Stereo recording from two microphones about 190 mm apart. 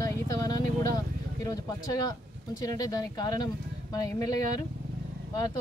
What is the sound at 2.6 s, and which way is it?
Speech, 20° left (ahead or behind).